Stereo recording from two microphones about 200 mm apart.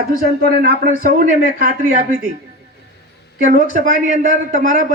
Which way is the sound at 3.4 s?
40° right (ahead or behind).